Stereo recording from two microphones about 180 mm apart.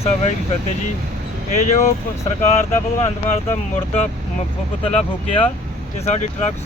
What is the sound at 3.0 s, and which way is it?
Speech, 35° left (ahead or behind).